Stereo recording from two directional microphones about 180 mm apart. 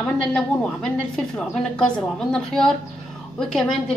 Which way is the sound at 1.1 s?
5° left (ahead or behind).